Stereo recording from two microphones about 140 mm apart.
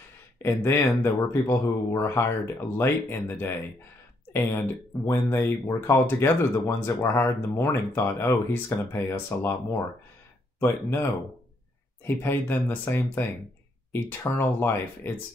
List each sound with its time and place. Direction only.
0.4 s speech: 15° left (ahead or behind)